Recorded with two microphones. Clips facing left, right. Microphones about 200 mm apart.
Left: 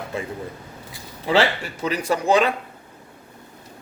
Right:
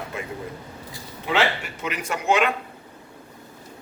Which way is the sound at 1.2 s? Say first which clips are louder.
Left 4 dB; 35° left (ahead or behind).